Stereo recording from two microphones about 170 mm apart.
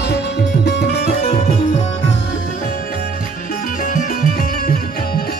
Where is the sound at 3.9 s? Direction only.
50° left (ahead or behind).